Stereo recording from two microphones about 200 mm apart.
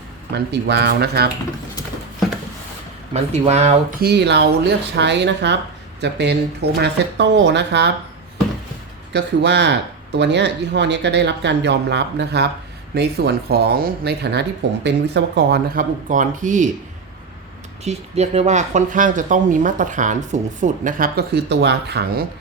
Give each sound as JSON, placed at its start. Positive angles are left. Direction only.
{"t": 0.3, "sound": "speech", "side_deg": -60}
{"t": 3.1, "sound": "speech", "side_deg": -30}
{"t": 4.0, "sound": "speech", "side_deg": -55}
{"t": 9.1, "sound": "speech", "side_deg": -60}
{"t": 17.8, "sound": "speech", "side_deg": -30}